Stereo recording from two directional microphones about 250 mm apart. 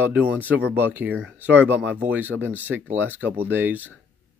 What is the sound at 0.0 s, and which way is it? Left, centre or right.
Speech, centre.